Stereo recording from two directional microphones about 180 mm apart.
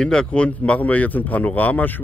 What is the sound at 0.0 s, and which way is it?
Speech, 5° left (ahead or behind).